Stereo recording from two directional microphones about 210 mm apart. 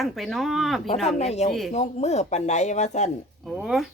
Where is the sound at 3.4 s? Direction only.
Centre (ahead or behind).